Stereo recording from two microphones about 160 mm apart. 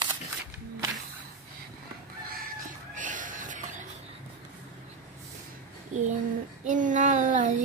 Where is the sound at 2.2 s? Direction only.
65° right (ahead or behind).